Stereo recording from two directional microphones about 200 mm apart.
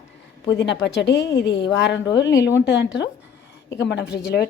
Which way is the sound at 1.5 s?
20° left (ahead or behind).